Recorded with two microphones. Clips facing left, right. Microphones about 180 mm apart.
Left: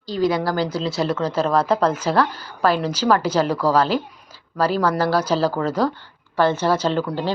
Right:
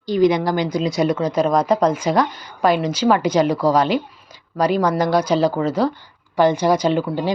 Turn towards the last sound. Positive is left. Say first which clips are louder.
# right 3 dB
turn(degrees=-15)  # may be behind; listen again after turning